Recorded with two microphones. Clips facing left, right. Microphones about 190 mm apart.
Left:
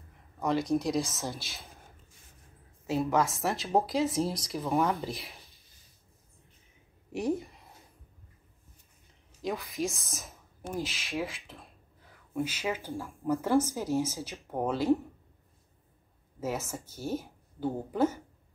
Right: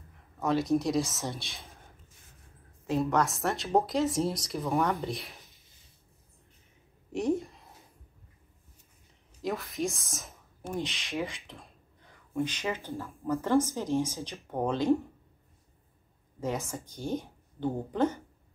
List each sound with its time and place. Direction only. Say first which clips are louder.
0.4 s speech: right 1 dB; centre (ahead or behind)
2.9 s speech: even; 5° left (ahead or behind)
7.1 s a sound: right 2 dB; 5° left (ahead or behind)
9.4 s speech: right 1 dB; centre (ahead or behind)
16.3 s a woman's voice: right 1 dB; 5° left (ahead or behind)